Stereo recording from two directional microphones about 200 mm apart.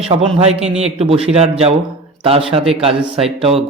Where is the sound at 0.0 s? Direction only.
30° right (ahead or behind).